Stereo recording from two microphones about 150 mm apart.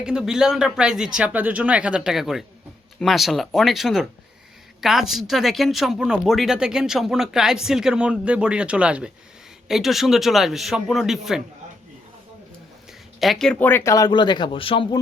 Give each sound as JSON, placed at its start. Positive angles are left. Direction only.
{"t": 0.0, "sound": "speech", "side_deg": -5}
{"t": 13.1, "sound": "speech", "side_deg": 0}